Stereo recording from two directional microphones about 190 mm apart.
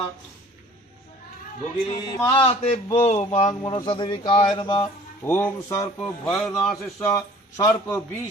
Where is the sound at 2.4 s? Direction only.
30° left (ahead or behind).